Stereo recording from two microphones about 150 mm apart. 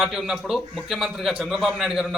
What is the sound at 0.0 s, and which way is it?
A man's voice, centre (ahead or behind).